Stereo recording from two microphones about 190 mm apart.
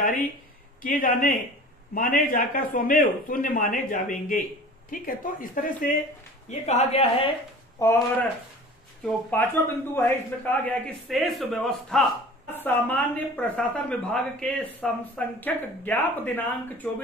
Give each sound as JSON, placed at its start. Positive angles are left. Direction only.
{"t": 0.8, "sound": "speech", "side_deg": 45}
{"t": 7.8, "sound": "a woman's voice", "side_deg": 15}
{"t": 12.5, "sound": "a woman's voice", "side_deg": 10}